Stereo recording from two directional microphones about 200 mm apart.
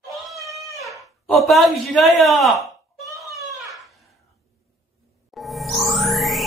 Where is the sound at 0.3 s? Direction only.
Centre (ahead or behind).